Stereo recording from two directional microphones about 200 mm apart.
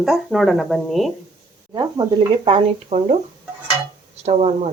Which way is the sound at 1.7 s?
20° right (ahead or behind).